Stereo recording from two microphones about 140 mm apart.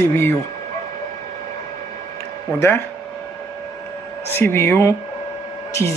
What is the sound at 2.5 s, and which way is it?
Speech, 15° left (ahead or behind).